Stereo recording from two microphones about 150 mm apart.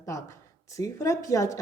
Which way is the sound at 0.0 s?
20° left (ahead or behind).